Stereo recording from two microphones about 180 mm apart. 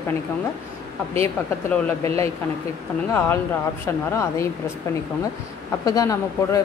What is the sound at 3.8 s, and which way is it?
A woman's voice, 15° left (ahead or behind).